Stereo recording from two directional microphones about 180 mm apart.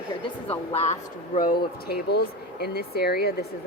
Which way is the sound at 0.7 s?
35° left (ahead or behind).